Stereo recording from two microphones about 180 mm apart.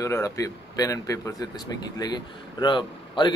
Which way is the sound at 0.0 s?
15° left (ahead or behind).